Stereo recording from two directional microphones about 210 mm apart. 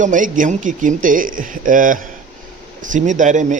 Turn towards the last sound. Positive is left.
turn(degrees=-35)  # may be behind; listen again after turning